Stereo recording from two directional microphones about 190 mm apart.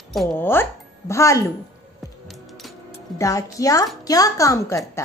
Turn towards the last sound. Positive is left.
turn(degrees=15)  # may be behind; listen again after turning